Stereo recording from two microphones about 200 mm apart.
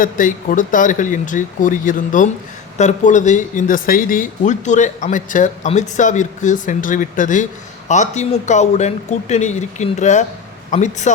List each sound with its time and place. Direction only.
0.0 s speech: 45° left (ahead or behind)